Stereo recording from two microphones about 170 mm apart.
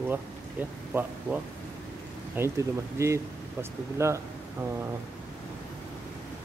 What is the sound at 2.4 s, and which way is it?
Speech, 15° right (ahead or behind).